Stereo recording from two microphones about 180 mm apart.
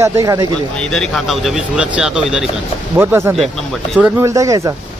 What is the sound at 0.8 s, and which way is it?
Speech, 5° left (ahead or behind).